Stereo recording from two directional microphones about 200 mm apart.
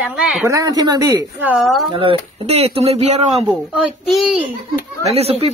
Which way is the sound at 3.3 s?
Centre (ahead or behind).